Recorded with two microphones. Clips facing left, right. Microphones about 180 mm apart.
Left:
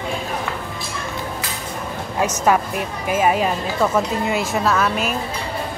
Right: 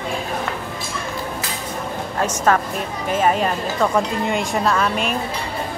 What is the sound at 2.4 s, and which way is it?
A woman's voice, 10° left (ahead or behind).